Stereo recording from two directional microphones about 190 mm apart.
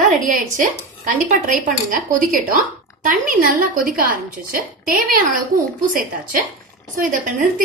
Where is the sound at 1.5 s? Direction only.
45° right (ahead or behind).